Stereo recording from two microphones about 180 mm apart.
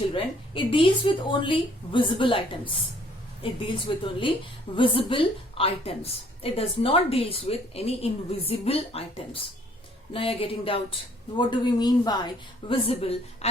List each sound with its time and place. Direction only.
0.1 s a woman's voice: 30° left (ahead or behind)